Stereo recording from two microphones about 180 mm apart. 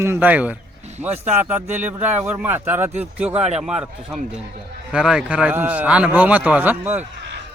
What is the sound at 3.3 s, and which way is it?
Speech, 35° right (ahead or behind).